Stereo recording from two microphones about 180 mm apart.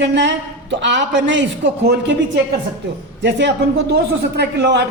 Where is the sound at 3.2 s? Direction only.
75° right (ahead or behind).